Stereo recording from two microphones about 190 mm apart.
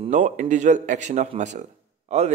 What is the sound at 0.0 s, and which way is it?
Speech, 40° right (ahead or behind).